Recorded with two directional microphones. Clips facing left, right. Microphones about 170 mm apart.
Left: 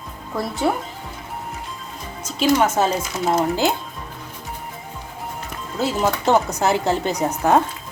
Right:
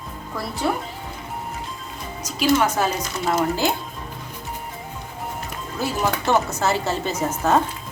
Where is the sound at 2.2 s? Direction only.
25° left (ahead or behind).